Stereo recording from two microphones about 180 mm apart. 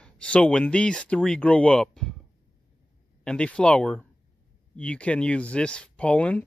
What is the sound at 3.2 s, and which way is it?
Speech, 5° left (ahead or behind).